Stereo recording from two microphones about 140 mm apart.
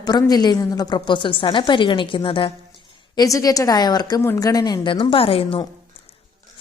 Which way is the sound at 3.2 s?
25° left (ahead or behind).